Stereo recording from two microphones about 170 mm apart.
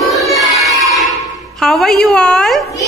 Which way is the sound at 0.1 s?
Centre (ahead or behind).